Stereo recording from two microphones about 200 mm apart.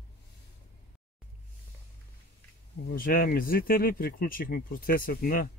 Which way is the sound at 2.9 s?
45° left (ahead or behind).